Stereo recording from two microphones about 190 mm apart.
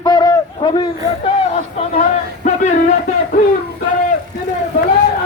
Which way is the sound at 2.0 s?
40° left (ahead or behind).